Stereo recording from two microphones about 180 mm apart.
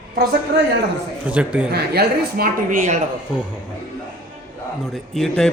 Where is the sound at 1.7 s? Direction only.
60° right (ahead or behind); by 3.0 s 45° right (ahead or behind).